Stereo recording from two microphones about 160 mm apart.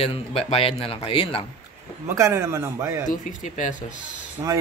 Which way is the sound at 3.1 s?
55° left (ahead or behind).